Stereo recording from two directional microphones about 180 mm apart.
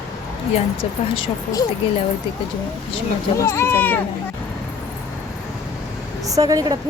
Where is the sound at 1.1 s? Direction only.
30° left (ahead or behind).